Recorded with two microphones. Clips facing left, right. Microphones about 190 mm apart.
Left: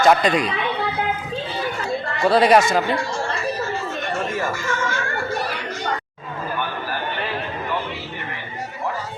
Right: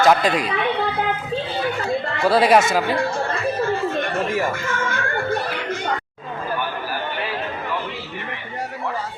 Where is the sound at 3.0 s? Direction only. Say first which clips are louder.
Right 3 dB; 55° right (ahead or behind).